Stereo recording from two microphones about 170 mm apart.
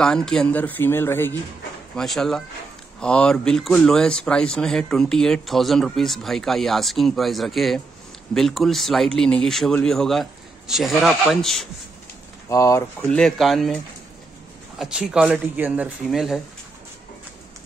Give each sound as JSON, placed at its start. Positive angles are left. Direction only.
{"t": 0.0, "sound": "speech", "side_deg": 5}
{"t": 2.0, "sound": "speech", "side_deg": 0}
{"t": 12.4, "sound": "speech", "side_deg": 20}
{"t": 13.1, "sound": "speech", "side_deg": 0}
{"t": 14.8, "sound": "speech", "side_deg": -5}